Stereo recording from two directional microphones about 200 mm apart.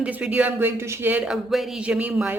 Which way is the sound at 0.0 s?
5° right (ahead or behind).